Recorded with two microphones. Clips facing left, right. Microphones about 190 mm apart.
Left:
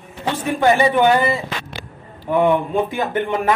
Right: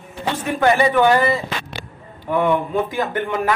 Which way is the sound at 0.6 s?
20° left (ahead or behind).